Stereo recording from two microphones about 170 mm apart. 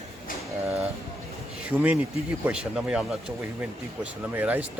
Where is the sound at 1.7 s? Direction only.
10° right (ahead or behind).